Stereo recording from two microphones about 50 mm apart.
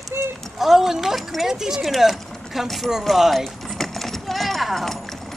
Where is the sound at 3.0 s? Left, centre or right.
Centre.